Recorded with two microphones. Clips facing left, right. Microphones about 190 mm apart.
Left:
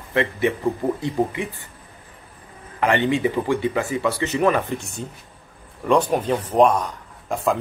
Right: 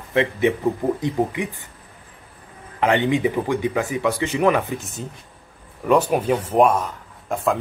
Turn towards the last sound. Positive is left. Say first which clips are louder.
# even
turn(degrees=0)  # may be behind; listen again after turning